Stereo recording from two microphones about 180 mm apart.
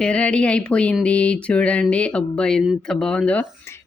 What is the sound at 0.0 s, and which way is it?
Speech, 5° left (ahead or behind).